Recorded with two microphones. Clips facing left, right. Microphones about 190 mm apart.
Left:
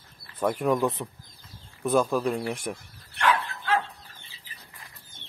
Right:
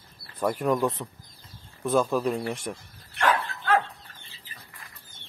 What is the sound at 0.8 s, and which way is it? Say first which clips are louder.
Speech: even; 15° left (ahead or behind).